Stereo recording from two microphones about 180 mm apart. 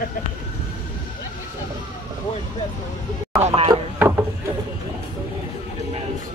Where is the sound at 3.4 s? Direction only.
35° right (ahead or behind).